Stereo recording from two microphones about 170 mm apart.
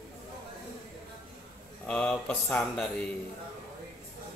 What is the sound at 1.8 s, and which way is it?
Speech, 5° left (ahead or behind).